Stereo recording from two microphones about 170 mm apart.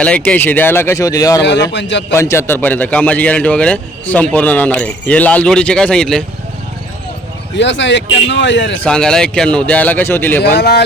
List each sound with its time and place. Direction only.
0.0 s a man's voice: 5° left (ahead or behind)
1.5 s speech: 90° left
2.1 s a man's voice: 15° left (ahead or behind)
7.5 s speech: 90° left
8.8 s a man's voice: 5° left (ahead or behind)
10.4 s speech: 75° left (ahead or behind)